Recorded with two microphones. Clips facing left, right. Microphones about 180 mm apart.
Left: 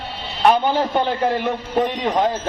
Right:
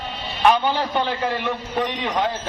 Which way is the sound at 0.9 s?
45° left (ahead or behind).